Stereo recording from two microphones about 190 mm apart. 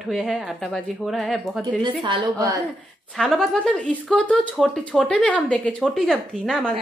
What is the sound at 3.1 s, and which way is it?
A woman's voice, 5° left (ahead or behind).